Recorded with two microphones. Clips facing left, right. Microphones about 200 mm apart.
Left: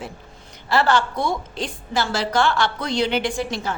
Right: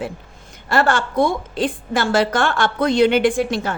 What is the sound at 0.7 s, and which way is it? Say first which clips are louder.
A woman's voice: right 1 dB; 50° right (ahead or behind).